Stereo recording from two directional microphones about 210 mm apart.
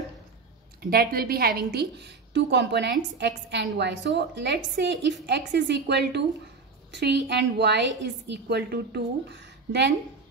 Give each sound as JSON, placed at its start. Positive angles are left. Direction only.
{"t": 0.8, "sound": "a woman's voice", "side_deg": -45}